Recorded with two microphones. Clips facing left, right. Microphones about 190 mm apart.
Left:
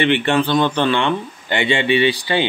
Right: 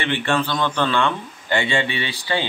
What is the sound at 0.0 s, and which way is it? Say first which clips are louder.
A man's voice: left 5 dB; 20° left (ahead or behind).